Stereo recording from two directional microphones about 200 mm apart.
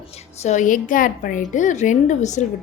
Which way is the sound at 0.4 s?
40° left (ahead or behind).